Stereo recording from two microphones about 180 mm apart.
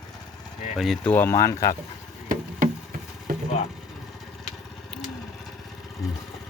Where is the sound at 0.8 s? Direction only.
Centre (ahead or behind).